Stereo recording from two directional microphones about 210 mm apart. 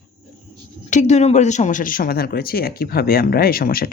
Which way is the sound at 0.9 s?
35° left (ahead or behind).